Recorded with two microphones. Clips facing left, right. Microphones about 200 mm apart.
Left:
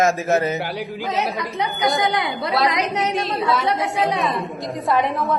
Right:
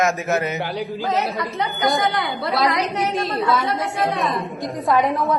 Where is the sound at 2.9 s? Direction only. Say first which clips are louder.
Even; centre (ahead or behind).